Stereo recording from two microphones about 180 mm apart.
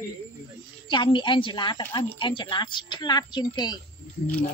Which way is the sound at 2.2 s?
25° left (ahead or behind).